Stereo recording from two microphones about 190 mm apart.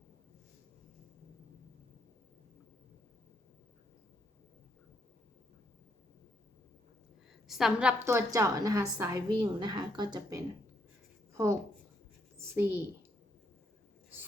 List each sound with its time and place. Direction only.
7.4 s a woman's voice: centre (ahead or behind)
8.0 s a woman's voice: 15° right (ahead or behind)
12.4 s a child's voice: 10° right (ahead or behind)